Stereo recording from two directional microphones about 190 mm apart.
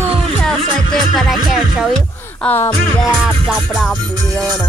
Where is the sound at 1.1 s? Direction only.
Centre (ahead or behind).